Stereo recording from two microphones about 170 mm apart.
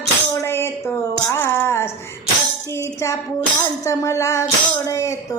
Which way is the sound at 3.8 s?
20° left (ahead or behind).